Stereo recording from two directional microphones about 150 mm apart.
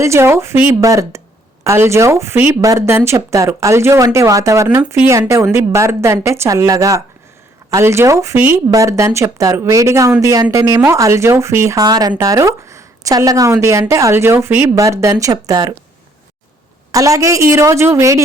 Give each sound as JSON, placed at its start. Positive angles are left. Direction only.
{"t": 0.0, "sound": "speech", "side_deg": -20}
{"t": 16.9, "sound": "speech", "side_deg": -20}